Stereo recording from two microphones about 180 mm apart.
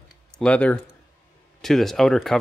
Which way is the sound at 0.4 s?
5° left (ahead or behind).